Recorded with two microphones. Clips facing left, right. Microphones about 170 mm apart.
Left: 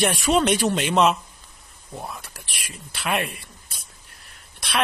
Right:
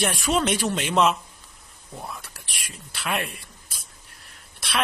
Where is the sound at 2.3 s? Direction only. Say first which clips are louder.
Left 2 dB; centre (ahead or behind).